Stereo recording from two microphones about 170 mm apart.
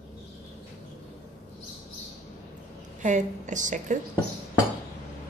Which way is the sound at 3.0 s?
45° right (ahead or behind).